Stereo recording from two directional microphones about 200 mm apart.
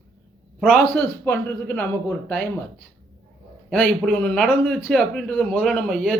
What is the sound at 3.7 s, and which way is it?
A man's voice, 5° left (ahead or behind).